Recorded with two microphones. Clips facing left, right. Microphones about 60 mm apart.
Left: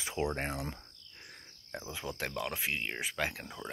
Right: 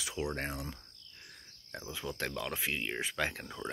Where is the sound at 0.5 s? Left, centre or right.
Left.